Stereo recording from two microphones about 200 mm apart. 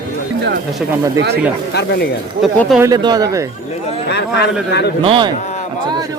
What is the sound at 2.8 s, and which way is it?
Speech, 20° right (ahead or behind).